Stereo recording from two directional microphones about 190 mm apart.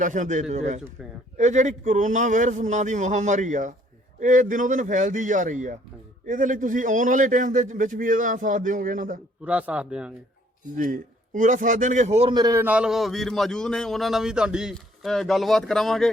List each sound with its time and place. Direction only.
0.0 s a man's voice: 40° right (ahead or behind)
9.4 s speech: 5° right (ahead or behind)
10.8 s a man's voice: 45° right (ahead or behind)
12.3 s a man's voice: 20° right (ahead or behind); by 16.0 s centre (ahead or behind)